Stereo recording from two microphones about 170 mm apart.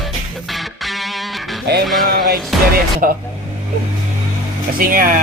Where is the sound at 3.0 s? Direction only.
55° right (ahead or behind).